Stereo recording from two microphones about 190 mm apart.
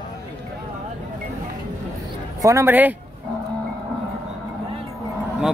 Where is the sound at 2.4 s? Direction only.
15° right (ahead or behind).